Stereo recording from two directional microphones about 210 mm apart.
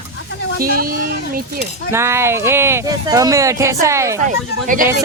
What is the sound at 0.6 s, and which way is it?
Speech, 45° right (ahead or behind).